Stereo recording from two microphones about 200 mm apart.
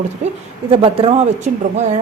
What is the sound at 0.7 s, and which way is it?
Speech, 30° right (ahead or behind).